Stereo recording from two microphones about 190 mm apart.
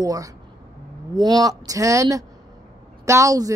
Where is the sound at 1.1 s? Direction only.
20° right (ahead or behind).